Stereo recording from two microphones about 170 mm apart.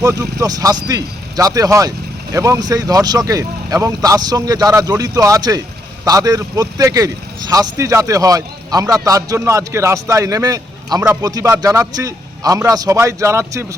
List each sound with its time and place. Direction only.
0.0 s speech: 20° right (ahead or behind)